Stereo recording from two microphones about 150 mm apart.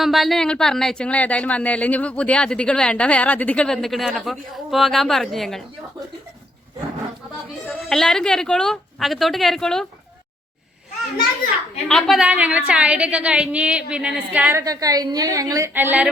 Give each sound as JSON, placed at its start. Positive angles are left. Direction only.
{"t": 0.0, "sound": "speech", "side_deg": 0}
{"t": 7.7, "sound": "speech", "side_deg": 0}
{"t": 11.9, "sound": "a woman's voice", "side_deg": 0}
{"t": 14.6, "sound": "a woman's voice", "side_deg": -25}